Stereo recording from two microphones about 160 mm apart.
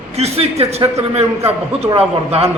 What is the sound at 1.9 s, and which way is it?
Speech, 40° right (ahead or behind).